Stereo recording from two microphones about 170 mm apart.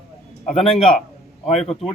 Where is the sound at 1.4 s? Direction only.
40° left (ahead or behind).